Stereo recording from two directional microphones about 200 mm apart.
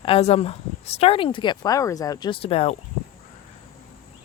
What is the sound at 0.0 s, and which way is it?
Speech, 30° left (ahead or behind).